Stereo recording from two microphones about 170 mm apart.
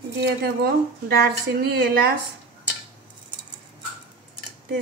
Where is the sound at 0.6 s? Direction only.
70° right (ahead or behind).